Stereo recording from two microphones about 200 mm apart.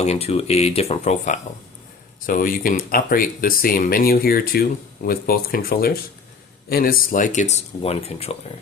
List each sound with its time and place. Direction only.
0.0 s speech: 30° left (ahead or behind)